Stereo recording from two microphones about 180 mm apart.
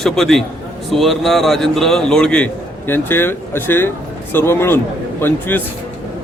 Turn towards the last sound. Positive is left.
turn(degrees=10)  # may be behind; listen again after turning